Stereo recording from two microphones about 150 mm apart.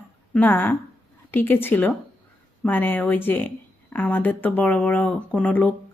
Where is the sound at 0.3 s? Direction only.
10° left (ahead or behind).